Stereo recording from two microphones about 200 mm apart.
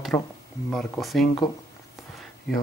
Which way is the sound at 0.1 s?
15° left (ahead or behind).